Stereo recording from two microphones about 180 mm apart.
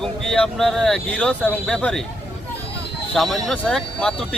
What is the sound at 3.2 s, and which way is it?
Speech, centre (ahead or behind).